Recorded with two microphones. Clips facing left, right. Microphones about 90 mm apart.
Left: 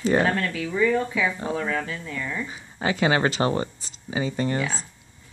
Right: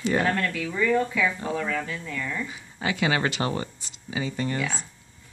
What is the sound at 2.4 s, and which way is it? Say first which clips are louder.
Speech: left 3 dB; 35° left (ahead or behind).